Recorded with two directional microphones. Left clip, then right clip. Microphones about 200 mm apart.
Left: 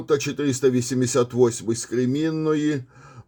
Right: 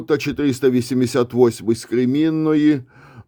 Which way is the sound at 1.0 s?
35° right (ahead or behind).